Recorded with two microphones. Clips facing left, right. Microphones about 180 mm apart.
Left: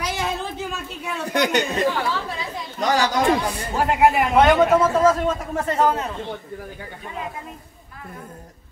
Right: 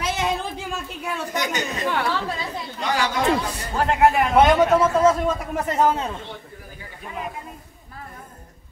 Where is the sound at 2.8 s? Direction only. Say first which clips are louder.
Left 4 dB; 40° left (ahead or behind).